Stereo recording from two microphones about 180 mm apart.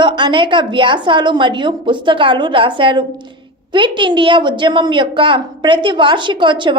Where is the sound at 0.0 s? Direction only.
25° right (ahead or behind).